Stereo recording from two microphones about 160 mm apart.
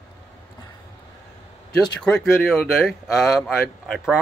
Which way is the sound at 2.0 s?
Centre (ahead or behind).